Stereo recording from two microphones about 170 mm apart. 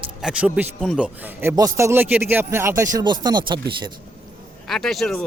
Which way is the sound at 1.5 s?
20° right (ahead or behind).